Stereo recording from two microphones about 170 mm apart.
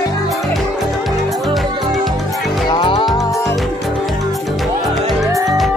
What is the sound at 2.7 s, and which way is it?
Music, 30° left (ahead or behind).